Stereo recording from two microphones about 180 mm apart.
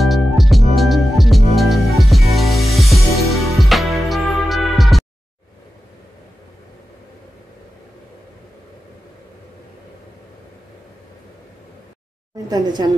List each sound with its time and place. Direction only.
0.0 s music: centre (ahead or behind)
12.4 s a woman's voice: 25° right (ahead or behind)